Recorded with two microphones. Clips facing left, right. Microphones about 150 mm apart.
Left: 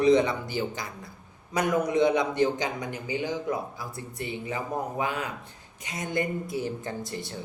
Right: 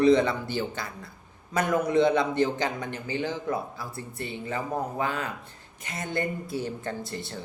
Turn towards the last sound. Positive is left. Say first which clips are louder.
# even
turn(degrees=15)  # may be behind; listen again after turning